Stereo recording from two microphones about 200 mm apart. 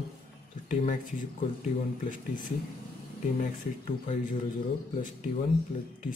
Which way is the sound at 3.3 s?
40° left (ahead or behind).